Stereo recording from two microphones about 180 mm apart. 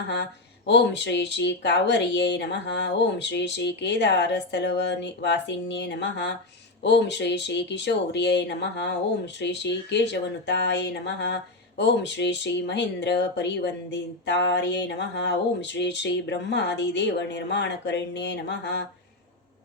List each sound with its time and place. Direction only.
0.1 s speech: 70° left (ahead or behind)